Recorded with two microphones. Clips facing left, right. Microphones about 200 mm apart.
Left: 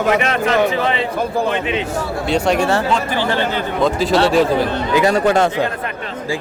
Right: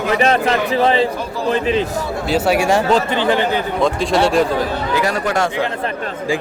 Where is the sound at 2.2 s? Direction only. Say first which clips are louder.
Right 1 dB; 5° right (ahead or behind).